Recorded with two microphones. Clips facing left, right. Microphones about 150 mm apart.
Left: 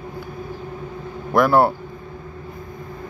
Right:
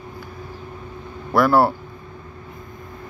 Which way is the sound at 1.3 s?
Centre (ahead or behind).